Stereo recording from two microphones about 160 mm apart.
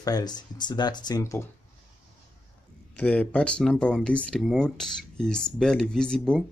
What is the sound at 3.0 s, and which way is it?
Speech, 10° left (ahead or behind).